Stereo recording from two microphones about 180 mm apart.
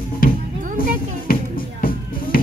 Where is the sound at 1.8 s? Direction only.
50° left (ahead or behind).